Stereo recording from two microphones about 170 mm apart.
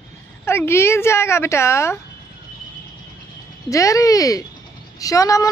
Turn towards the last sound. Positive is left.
turn(degrees=20)  # may be behind; listen again after turning